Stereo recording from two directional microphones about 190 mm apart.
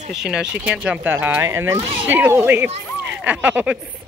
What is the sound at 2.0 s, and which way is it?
Speech, 10° right (ahead or behind).